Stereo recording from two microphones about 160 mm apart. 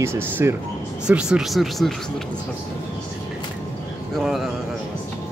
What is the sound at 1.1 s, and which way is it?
Speech, 5° right (ahead or behind).